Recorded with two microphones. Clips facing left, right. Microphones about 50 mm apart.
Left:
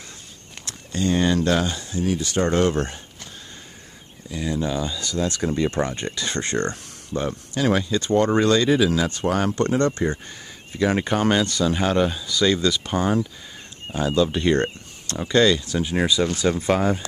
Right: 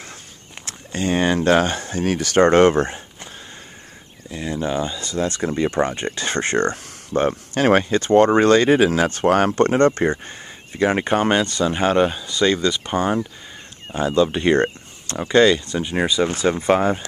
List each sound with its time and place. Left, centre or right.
0.7 s speech: right
1.6 s speech: right
2.7 s speech: right
4.3 s speech: centre
5.9 s speech: right
12.5 s speech: centre
16.1 s speech: right